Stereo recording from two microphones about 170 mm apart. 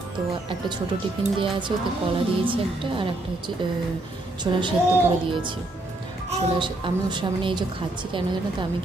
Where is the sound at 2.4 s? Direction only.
30° right (ahead or behind).